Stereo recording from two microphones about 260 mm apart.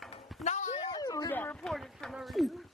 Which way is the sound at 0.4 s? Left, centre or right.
Left.